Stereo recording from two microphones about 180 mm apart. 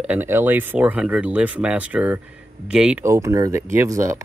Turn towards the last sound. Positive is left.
turn(degrees=-15)  # may be behind; listen again after turning